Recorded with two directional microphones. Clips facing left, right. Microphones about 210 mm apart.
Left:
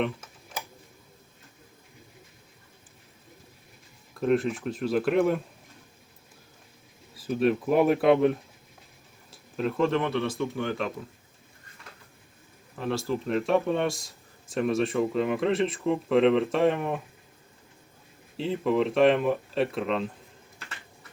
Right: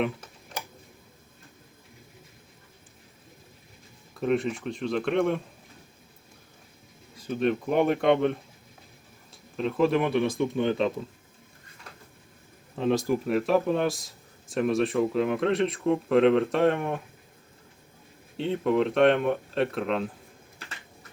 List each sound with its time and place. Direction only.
4.1 s speech: centre (ahead or behind)
7.2 s speech: 5° left (ahead or behind); by 10.9 s 20° right (ahead or behind)
12.7 s speech: 20° right (ahead or behind)
13.2 s speech: 5° right (ahead or behind)
18.3 s speech: centre (ahead or behind)